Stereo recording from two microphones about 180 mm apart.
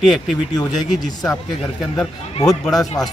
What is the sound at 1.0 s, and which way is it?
Speech, 20° left (ahead or behind).